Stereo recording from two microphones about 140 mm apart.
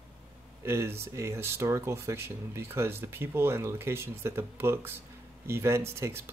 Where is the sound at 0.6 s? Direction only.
20° right (ahead or behind).